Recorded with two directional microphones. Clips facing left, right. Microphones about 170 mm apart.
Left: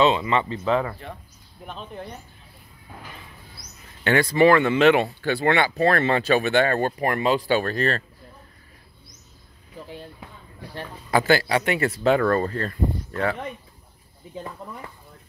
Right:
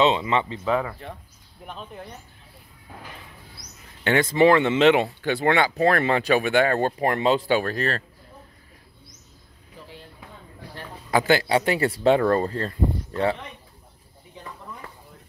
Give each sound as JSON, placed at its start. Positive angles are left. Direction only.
{"t": 0.0, "sound": "speech", "side_deg": -20}
{"t": 4.0, "sound": "speech", "side_deg": -20}
{"t": 7.5, "sound": "speech", "side_deg": -5}
{"t": 11.1, "sound": "speech", "side_deg": -15}